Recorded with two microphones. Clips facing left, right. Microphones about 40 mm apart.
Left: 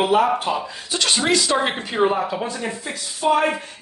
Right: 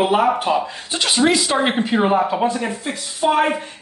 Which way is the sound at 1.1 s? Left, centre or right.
Centre.